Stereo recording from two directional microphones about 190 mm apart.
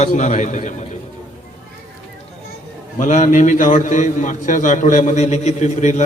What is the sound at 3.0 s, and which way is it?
A man's voice, 40° left (ahead or behind).